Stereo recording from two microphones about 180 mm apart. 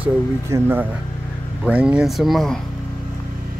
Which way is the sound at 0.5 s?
10° right (ahead or behind).